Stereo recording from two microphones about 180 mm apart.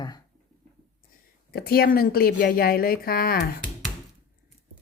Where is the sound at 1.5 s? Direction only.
60° left (ahead or behind).